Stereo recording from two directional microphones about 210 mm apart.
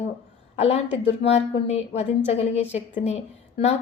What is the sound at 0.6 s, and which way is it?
A woman's voice, 30° left (ahead or behind).